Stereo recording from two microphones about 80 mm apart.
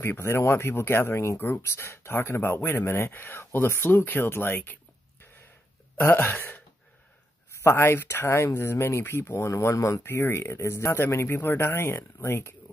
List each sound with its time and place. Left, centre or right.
0.0 s speech: left
6.0 s speech: left
7.6 s speech: left